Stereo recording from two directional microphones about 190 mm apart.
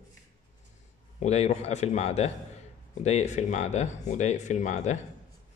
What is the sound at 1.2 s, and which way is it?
Speech, 35° left (ahead or behind).